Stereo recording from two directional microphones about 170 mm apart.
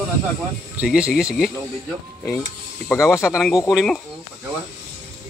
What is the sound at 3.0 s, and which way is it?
Speech, 15° left (ahead or behind).